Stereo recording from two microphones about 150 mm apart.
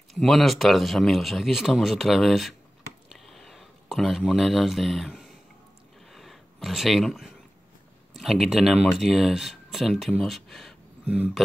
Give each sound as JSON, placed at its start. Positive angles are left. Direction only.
{"t": 0.1, "sound": "speech", "side_deg": 0}
{"t": 3.1, "sound": "a sound", "side_deg": 0}
{"t": 8.2, "sound": "speech", "side_deg": 0}